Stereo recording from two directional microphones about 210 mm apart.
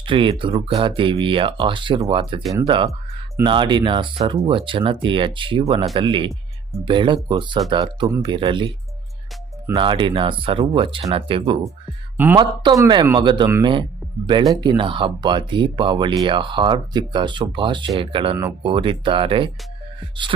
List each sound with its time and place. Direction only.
0.0 s speech: 25° right (ahead or behind)
9.7 s speech: 25° right (ahead or behind)
12.1 s speech: 10° right (ahead or behind); by 19.5 s 25° right (ahead or behind)